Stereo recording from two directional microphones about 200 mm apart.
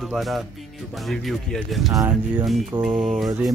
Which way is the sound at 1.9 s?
15° right (ahead or behind).